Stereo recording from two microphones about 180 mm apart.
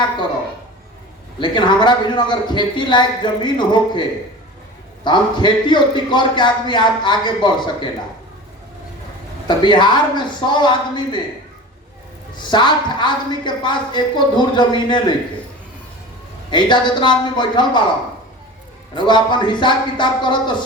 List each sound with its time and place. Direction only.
1.4 s a man's voice: 25° left (ahead or behind)
5.0 s a man's voice: 25° left (ahead or behind)
9.5 s a man's voice: 25° left (ahead or behind)
12.5 s a man's voice: 25° left (ahead or behind)
16.5 s a man's voice: 25° left (ahead or behind)
18.9 s a man's voice: 25° left (ahead or behind)